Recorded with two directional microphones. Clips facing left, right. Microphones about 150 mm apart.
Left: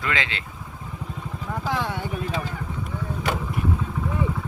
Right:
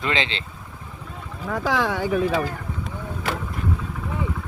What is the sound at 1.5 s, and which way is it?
Speech, 90° right.